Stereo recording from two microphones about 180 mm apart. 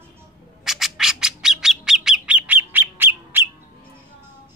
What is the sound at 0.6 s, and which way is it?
Bird, centre (ahead or behind).